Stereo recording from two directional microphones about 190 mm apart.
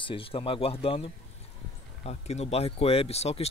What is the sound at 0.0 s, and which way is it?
Speech, 30° left (ahead or behind).